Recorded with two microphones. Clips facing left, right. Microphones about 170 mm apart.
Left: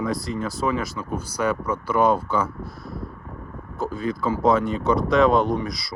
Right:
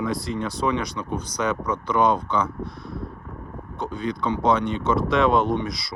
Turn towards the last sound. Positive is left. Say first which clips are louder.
# even
turn(degrees=0)  # may be behind; listen again after turning